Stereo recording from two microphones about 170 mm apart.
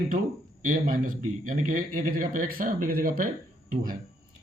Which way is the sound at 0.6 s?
55° right (ahead or behind).